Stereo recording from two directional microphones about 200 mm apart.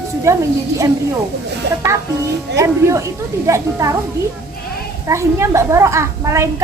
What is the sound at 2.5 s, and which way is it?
A woman's voice, 15° right (ahead or behind).